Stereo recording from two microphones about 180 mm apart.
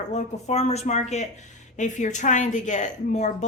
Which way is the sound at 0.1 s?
40° left (ahead or behind).